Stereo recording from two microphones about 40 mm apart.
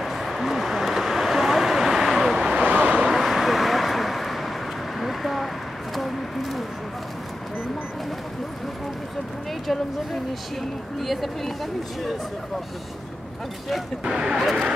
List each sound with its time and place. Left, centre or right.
0.0 s a sound: centre
2.7 s vehicle: right
3.1 s vehicle: centre
5.0 s a sound: centre
11.0 s speech: centre
14.0 s speech: centre